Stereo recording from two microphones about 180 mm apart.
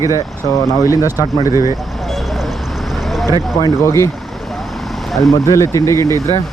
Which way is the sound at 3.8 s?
15° left (ahead or behind).